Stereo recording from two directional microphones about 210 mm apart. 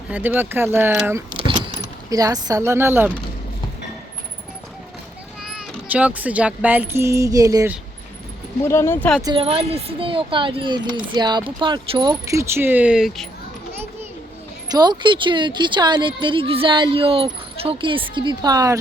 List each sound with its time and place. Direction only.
0.1 s speech: 10° right (ahead or behind)
1.3 s keys jangling: 25° right (ahead or behind)
5.9 s speech: 5° right (ahead or behind)
8.6 s speech: 10° left (ahead or behind)
9.2 s a woman's voice: 25° right (ahead or behind); by 13.2 s centre (ahead or behind)
14.7 s a woman's voice: 20° right (ahead or behind)